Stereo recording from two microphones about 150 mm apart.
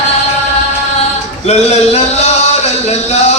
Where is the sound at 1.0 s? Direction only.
45° left (ahead or behind).